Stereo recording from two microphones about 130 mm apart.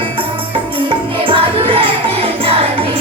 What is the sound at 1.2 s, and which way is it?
Music, 45° right (ahead or behind).